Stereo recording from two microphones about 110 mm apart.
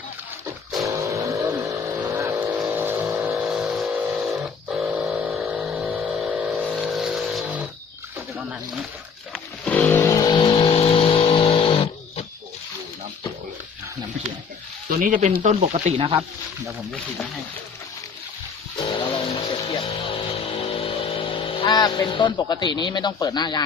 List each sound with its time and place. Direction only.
0.8 s a sound: 30° right (ahead or behind)
1.8 s vehicle: 15° right (ahead or behind)
3.5 s vehicle: 5° right (ahead or behind)
7.4 s a sound: 15° right (ahead or behind)
9.3 s music: 10° left (ahead or behind)
10.2 s vehicle: 45° left (ahead or behind)
15.2 s speech: 90° right
16.0 s speech: 50° right (ahead or behind)
18.8 s music: 45° left (ahead or behind)
20.4 s speech: 55° left (ahead or behind); by 23.6 s 40° left (ahead or behind)